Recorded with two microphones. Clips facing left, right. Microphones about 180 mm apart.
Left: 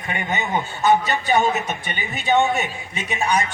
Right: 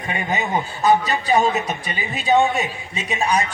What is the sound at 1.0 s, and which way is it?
A man's voice, 30° right (ahead or behind).